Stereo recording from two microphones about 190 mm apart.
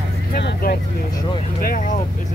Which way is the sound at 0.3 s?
55° left (ahead or behind).